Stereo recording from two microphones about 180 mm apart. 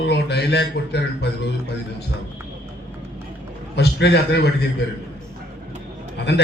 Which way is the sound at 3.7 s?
65° left (ahead or behind).